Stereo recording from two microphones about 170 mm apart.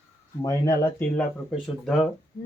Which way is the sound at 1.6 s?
Centre (ahead or behind).